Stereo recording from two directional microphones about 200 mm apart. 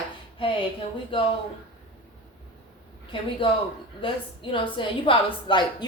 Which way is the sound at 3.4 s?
25° left (ahead or behind).